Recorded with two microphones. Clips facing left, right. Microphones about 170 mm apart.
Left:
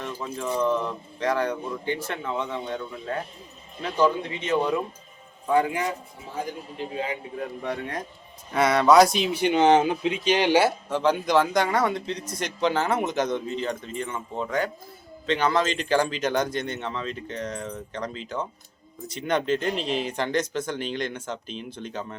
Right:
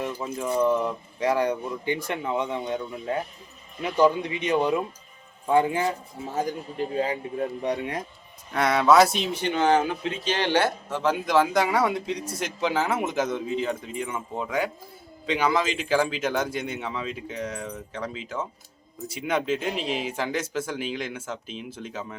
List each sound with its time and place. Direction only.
0.0 s speech: 10° right (ahead or behind)
5.5 s speech: 25° right (ahead or behind)
6.3 s a man's voice: 40° right (ahead or behind)
7.6 s speech: 20° right (ahead or behind)
8.5 s speech: centre (ahead or behind)
9.4 s speech: 20° left (ahead or behind); by 22.2 s 5° right (ahead or behind)